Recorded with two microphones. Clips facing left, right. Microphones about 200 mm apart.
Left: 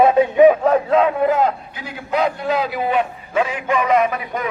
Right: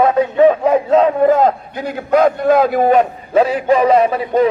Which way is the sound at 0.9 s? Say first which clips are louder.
Right 4 dB; 40° right (ahead or behind).